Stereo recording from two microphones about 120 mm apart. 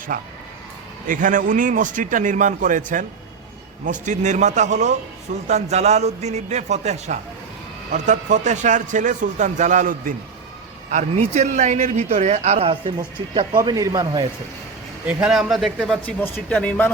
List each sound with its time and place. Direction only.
1.0 s speech: 90° right
5.5 s a man's voice: 70° right (ahead or behind)
7.9 s speech: 90° right
10.9 s a man's voice: 80° right; by 13.1 s 50° right (ahead or behind)
13.3 s a man's voice: 40° right (ahead or behind)
15.0 s a man's voice: 5° right (ahead or behind)
16.0 s speech: 15° left (ahead or behind)